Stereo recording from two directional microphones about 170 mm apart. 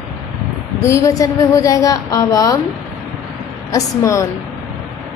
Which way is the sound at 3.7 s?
20° left (ahead or behind).